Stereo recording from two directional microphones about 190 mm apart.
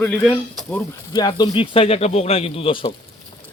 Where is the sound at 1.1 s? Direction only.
20° left (ahead or behind).